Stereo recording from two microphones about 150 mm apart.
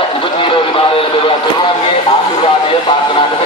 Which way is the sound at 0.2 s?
35° left (ahead or behind).